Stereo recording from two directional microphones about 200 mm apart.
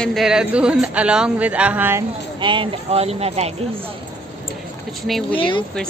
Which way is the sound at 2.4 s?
25° right (ahead or behind).